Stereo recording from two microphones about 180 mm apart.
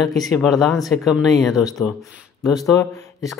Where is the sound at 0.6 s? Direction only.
Centre (ahead or behind).